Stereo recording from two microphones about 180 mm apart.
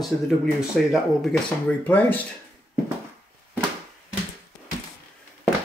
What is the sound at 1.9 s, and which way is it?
Speech, 10° left (ahead or behind).